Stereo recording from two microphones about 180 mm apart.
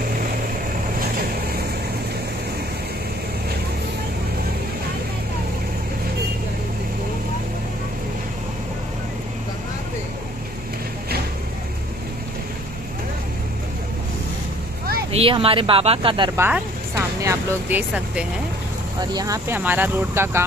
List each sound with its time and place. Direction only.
15.0 s speech: 30° right (ahead or behind)
16.3 s speech: 15° right (ahead or behind)
18.9 s speech: 20° right (ahead or behind)